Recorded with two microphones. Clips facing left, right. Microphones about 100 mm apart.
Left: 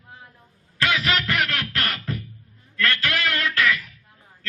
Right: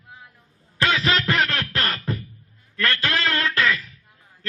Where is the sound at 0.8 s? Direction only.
25° right (ahead or behind).